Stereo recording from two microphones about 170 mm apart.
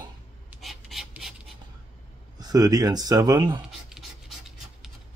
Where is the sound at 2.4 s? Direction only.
20° right (ahead or behind).